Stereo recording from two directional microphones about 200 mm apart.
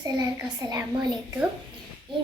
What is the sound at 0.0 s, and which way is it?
A woman's voice, 20° right (ahead or behind).